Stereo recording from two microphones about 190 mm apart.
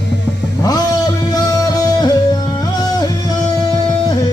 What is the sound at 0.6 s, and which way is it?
Music, 20° left (ahead or behind).